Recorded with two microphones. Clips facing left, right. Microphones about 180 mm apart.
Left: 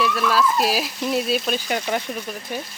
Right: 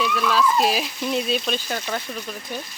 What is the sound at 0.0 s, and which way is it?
Speech, 5° left (ahead or behind).